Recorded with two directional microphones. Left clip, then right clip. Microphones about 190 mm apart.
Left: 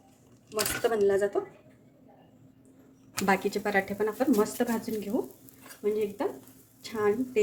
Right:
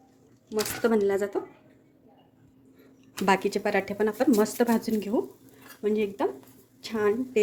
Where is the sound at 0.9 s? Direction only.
40° right (ahead or behind).